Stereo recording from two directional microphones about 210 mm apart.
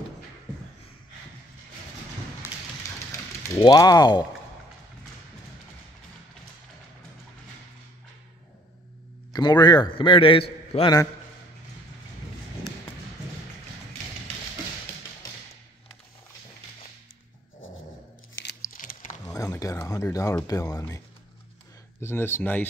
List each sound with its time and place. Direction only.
3.4 s a man's voice: 15° left (ahead or behind)
9.3 s a man's voice: 20° left (ahead or behind)
17.6 s dog: 70° left (ahead or behind)
18.7 s a sound: 40° left (ahead or behind)
19.2 s a sound: 15° left (ahead or behind)
22.0 s speech: 10° left (ahead or behind)